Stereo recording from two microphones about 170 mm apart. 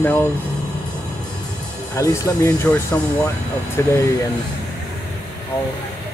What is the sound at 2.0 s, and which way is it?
Speech, 20° left (ahead or behind).